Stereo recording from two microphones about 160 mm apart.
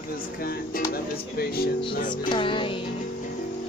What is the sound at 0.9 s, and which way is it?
Speech, 75° left (ahead or behind).